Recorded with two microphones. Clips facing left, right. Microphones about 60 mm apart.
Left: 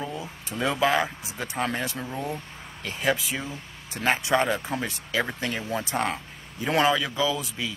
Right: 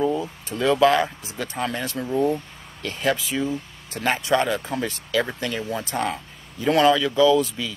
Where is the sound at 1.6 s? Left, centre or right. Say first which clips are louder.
Even; left.